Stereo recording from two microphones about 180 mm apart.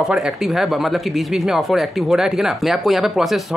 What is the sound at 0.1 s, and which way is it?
Speech, centre (ahead or behind).